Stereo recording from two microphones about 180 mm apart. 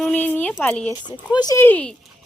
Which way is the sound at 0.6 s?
10° left (ahead or behind).